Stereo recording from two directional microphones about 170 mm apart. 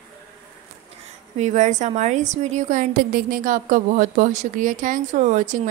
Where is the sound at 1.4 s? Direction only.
45° right (ahead or behind).